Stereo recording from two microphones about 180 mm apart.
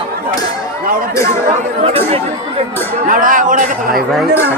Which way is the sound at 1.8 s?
35° right (ahead or behind).